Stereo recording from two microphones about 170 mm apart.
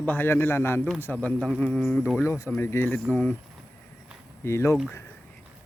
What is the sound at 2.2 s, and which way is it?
A man's voice, 15° left (ahead or behind).